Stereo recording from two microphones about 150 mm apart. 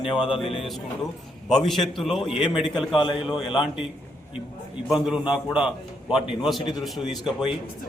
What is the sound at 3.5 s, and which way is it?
Speech, 5° right (ahead or behind).